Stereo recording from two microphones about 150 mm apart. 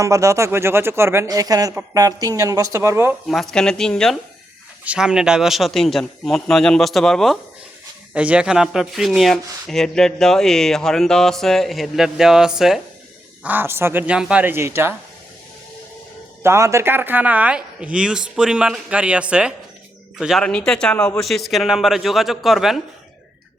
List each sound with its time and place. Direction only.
0.0 s speech: 20° right (ahead or behind)
3.5 s speech: 5° left (ahead or behind)
8.1 s speech: 10° right (ahead or behind)
16.4 s speech: 20° right (ahead or behind); by 22.8 s centre (ahead or behind)